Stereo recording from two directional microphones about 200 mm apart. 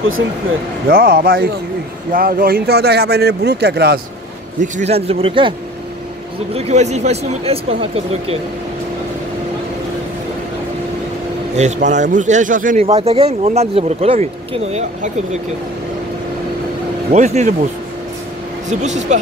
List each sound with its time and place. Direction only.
0.8 s speech: 45° right (ahead or behind)
4.6 s speech: 35° right (ahead or behind)
6.5 s speech: 30° right (ahead or behind)
11.5 s speech: 35° right (ahead or behind)
12.8 s speech: 30° right (ahead or behind)
17.1 s speech: 35° right (ahead or behind)
18.7 s speech: 35° right (ahead or behind)